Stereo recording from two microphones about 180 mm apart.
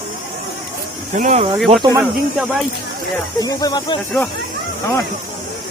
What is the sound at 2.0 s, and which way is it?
Speech, 5° right (ahead or behind).